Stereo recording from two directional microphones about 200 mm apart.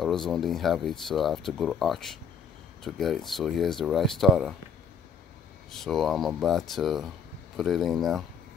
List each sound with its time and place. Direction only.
0.0 s speech: centre (ahead or behind)
5.7 s speech: centre (ahead or behind)